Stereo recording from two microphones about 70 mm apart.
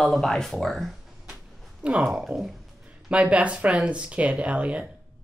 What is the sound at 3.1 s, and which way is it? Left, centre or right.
Speech, centre.